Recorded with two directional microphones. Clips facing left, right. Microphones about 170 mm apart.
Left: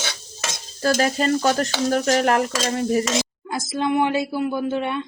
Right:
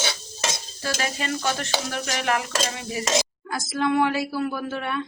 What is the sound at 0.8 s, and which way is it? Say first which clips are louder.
Stir: left 9 dB; 45° left (ahead or behind).